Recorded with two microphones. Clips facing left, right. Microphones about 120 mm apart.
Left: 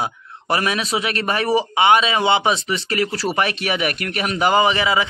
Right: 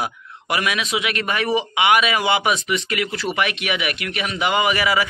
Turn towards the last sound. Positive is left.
turn(degrees=25)  # may be behind; listen again after turning